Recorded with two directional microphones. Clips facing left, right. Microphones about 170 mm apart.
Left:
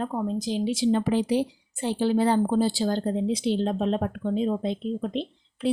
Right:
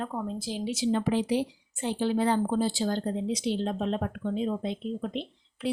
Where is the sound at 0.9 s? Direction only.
40° left (ahead or behind).